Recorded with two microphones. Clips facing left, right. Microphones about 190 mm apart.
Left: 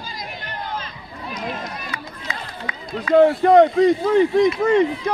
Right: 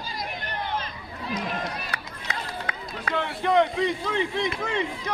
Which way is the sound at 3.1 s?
45° left (ahead or behind).